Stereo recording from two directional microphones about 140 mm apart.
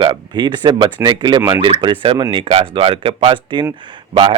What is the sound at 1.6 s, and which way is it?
Speech, 35° right (ahead or behind).